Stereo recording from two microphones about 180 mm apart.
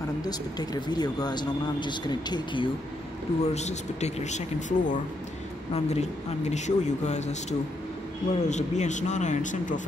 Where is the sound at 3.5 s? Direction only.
40° left (ahead or behind).